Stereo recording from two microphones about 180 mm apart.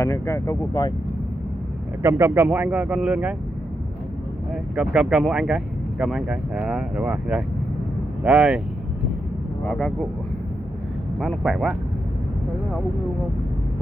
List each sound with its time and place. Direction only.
0.0 s speech: 15° left (ahead or behind)
2.0 s speech: 15° right (ahead or behind)
4.7 s speech: 5° right (ahead or behind)
9.7 s speech: centre (ahead or behind)
11.1 s speech: centre (ahead or behind)